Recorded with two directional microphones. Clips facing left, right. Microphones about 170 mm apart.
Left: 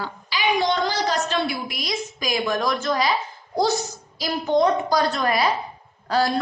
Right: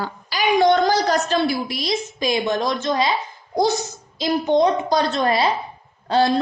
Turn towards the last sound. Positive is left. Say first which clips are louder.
# right 4 dB
turn(degrees=-25)  # may be behind; listen again after turning